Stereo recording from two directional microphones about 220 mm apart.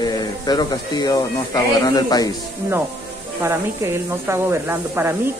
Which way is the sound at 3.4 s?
10° right (ahead or behind).